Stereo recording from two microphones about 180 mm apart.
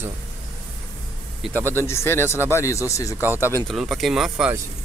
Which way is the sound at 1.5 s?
10° left (ahead or behind).